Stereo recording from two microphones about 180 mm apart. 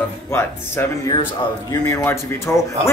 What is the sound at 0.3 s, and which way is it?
Speech, 15° left (ahead or behind).